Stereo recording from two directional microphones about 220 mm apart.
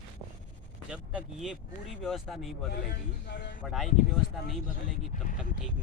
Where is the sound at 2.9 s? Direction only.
45° left (ahead or behind).